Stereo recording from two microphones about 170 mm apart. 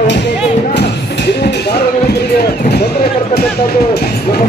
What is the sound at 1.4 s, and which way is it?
Music, 70° left (ahead or behind).